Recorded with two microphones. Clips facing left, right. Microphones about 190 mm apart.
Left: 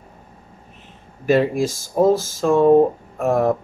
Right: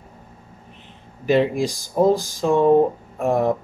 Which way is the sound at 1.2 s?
5° left (ahead or behind).